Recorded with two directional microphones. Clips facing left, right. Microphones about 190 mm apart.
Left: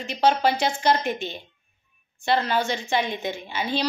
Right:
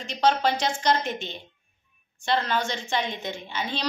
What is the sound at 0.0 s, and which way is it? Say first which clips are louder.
A woman's voice: left 2 dB; 10° left (ahead or behind).